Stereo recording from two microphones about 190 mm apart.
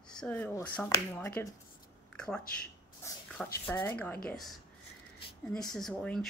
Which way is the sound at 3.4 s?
10° left (ahead or behind).